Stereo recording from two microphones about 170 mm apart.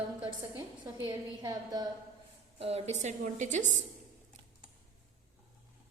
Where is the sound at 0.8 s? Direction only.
25° right (ahead or behind).